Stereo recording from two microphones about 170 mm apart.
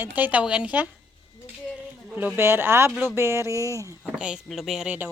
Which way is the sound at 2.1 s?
10° right (ahead or behind).